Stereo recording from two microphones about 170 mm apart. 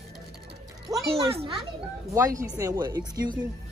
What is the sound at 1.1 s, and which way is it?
Speech, 35° right (ahead or behind).